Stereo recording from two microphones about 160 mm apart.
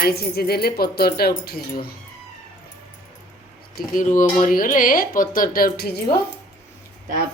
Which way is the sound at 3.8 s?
55° left (ahead or behind).